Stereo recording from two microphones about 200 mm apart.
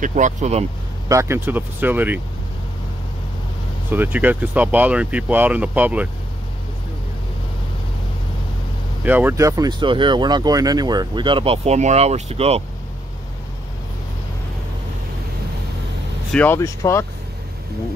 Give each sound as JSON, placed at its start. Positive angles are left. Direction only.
{"t": 0.0, "sound": "speech", "side_deg": -40}
{"t": 1.0, "sound": "speech", "side_deg": -15}
{"t": 3.9, "sound": "speech", "side_deg": -10}
{"t": 9.0, "sound": "speech", "side_deg": -10}
{"t": 16.3, "sound": "speech", "side_deg": 10}